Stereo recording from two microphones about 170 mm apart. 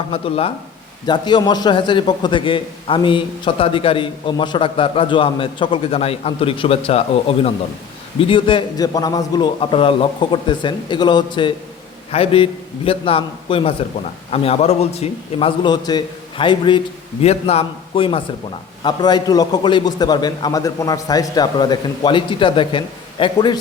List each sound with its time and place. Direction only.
0.1 s a man's voice: 35° left (ahead or behind)